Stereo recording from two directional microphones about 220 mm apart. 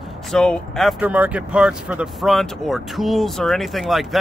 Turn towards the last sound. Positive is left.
turn(degrees=0)  # may be behind; listen again after turning